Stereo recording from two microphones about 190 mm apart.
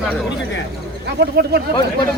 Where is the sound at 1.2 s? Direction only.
60° right (ahead or behind).